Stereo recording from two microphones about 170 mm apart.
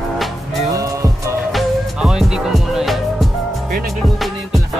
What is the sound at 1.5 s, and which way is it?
Music, centre (ahead or behind).